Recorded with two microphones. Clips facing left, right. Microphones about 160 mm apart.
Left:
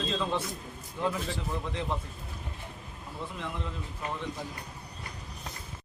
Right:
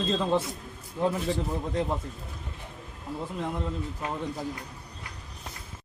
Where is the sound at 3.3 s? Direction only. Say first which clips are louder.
Right 6 dB; 45° right (ahead or behind).